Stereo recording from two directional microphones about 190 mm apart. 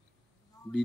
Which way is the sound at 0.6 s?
20° left (ahead or behind).